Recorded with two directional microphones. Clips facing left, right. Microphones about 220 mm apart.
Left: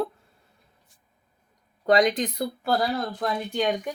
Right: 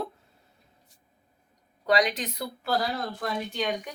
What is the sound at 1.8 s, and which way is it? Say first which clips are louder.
A woman's voice: left 4 dB; 45° left (ahead or behind).